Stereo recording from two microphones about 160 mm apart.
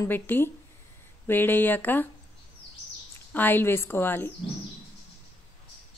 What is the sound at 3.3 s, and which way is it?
Speech, 10° left (ahead or behind).